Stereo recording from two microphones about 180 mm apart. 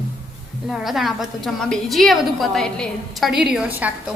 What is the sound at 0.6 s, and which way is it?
A woman's voice, centre (ahead or behind).